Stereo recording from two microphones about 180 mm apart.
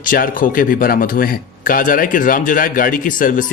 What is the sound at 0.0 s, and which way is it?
Speech, 50° left (ahead or behind).